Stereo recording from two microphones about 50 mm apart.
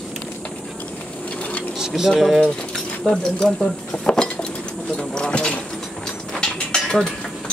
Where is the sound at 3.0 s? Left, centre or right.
Centre.